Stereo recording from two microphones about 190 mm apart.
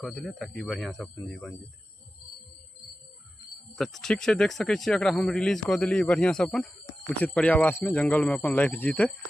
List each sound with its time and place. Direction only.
0.0 s speech: centre (ahead or behind)
3.7 s speech: centre (ahead or behind)